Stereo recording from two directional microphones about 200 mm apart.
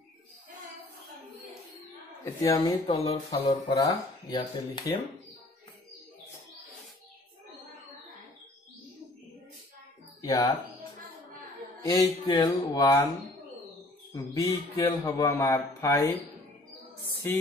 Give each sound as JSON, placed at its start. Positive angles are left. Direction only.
{"t": 2.2, "sound": "a man's voice", "side_deg": 15}
{"t": 10.2, "sound": "speech", "side_deg": 15}
{"t": 11.8, "sound": "a man's voice", "side_deg": 15}
{"t": 14.1, "sound": "a man's voice", "side_deg": 15}
{"t": 17.3, "sound": "a man's voice", "side_deg": 10}